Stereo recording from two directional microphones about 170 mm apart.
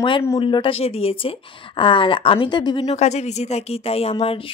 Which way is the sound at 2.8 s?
40° left (ahead or behind).